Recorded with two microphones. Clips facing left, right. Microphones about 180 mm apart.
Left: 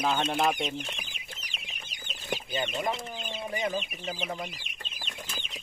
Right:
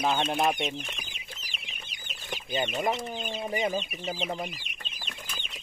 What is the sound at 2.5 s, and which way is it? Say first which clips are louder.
Speech: right 4 dB; 15° right (ahead or behind).